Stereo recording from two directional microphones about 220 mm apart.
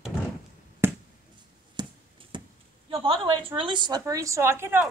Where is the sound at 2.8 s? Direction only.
25° right (ahead or behind).